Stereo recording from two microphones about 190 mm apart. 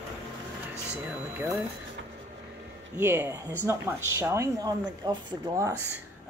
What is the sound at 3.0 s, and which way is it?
A woman's voice, 10° right (ahead or behind).